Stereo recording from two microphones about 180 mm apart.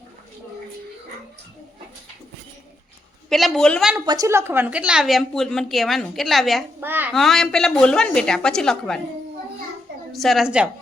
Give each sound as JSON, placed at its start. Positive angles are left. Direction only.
{"t": 3.2, "sound": "a woman's voice", "side_deg": 0}
{"t": 4.0, "sound": "a woman's voice", "side_deg": -20}
{"t": 6.7, "sound": "a child's voice", "side_deg": -10}
{"t": 7.1, "sound": "a woman's voice", "side_deg": 0}
{"t": 10.1, "sound": "a woman's voice", "side_deg": 0}